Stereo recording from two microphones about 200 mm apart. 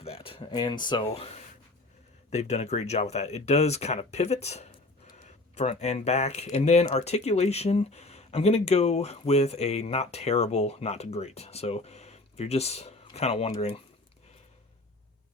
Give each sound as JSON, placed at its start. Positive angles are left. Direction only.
{"t": 0.0, "sound": "speech", "side_deg": 30}
{"t": 2.3, "sound": "speech", "side_deg": 35}